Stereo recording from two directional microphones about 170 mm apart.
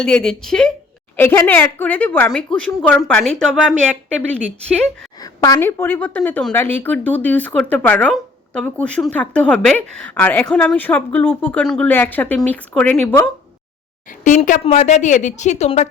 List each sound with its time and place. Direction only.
0.0 s speech: 5° left (ahead or behind)
5.2 s speech: 20° left (ahead or behind)
8.1 s a sound: 5° left (ahead or behind)
8.8 s speech: 5° left (ahead or behind)
14.1 s speech: 50° left (ahead or behind)